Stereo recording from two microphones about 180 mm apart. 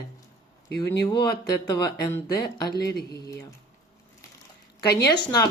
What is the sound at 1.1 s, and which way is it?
Speech, 20° left (ahead or behind).